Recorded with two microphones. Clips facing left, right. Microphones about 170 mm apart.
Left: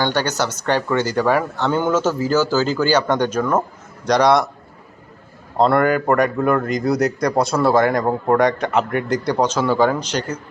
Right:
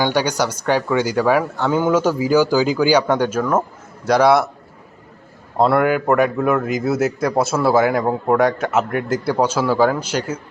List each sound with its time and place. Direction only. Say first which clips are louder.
0.0 s a man's voice: right 2 dB; 10° right (ahead or behind)
5.5 s a man's voice: even; 5° right (ahead or behind)